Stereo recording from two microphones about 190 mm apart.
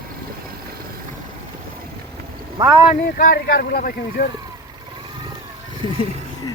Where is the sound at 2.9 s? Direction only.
45° left (ahead or behind).